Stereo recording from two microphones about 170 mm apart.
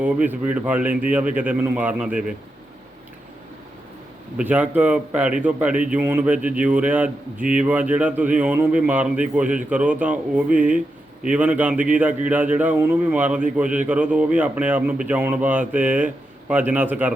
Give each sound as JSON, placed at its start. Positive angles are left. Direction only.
{"t": 0.0, "sound": "speech", "side_deg": -10}
{"t": 4.4, "sound": "speech", "side_deg": -10}